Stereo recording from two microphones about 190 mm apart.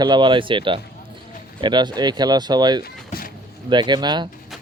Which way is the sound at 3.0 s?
45° left (ahead or behind).